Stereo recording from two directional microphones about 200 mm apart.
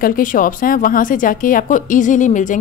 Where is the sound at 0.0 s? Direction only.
45° left (ahead or behind).